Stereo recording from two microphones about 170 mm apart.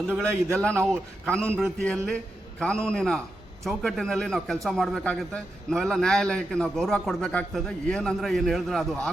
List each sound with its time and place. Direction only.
0.5 s a man's voice: 5° left (ahead or behind)